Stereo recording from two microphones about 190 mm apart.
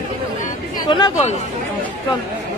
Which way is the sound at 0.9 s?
25° left (ahead or behind).